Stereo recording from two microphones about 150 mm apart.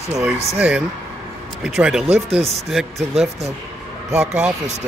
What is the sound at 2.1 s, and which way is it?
Speech, 40° right (ahead or behind).